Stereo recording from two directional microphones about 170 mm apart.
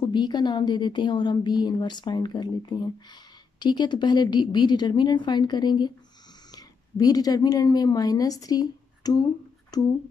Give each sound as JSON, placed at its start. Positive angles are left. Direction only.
{"t": 0.0, "sound": "a woman's voice", "side_deg": 25}